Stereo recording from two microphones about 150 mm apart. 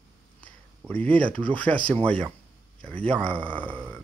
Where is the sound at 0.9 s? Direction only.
10° left (ahead or behind).